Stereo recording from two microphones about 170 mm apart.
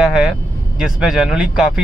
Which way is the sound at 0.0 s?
5° right (ahead or behind).